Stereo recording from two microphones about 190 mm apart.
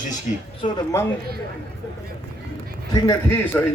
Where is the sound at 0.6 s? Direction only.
20° left (ahead or behind).